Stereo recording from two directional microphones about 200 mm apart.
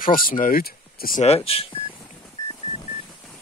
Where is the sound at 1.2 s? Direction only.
30° left (ahead or behind).